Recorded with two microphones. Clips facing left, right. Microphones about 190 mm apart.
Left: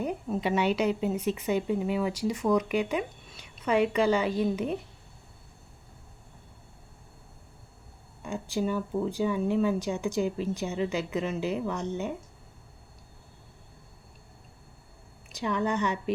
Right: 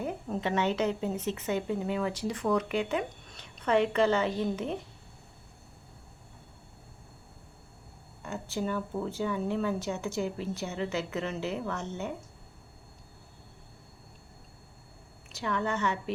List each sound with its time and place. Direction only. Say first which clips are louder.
0.3 s a woman's voice: left 2 dB; 10° left (ahead or behind)
8.2 s a woman's voice: left 4 dB; 15° left (ahead or behind)
15.3 s a woman's voice: left 3 dB; 15° left (ahead or behind)